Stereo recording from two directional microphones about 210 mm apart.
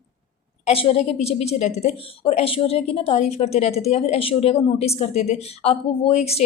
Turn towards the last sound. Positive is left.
turn(degrees=30)  # may be behind; listen again after turning